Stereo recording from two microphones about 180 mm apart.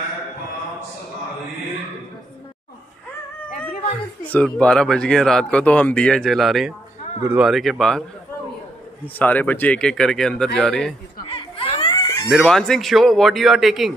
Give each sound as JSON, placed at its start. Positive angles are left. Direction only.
{"t": 4.2, "sound": "speech", "side_deg": 10}
{"t": 9.0, "sound": "speech", "side_deg": 10}
{"t": 11.2, "sound": "laughter", "side_deg": 30}
{"t": 12.3, "sound": "speech", "side_deg": 0}